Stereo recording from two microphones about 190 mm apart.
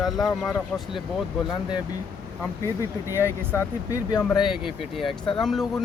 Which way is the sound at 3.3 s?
15° left (ahead or behind).